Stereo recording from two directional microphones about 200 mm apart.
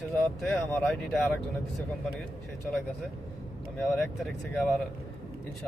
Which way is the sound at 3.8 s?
Centre (ahead or behind).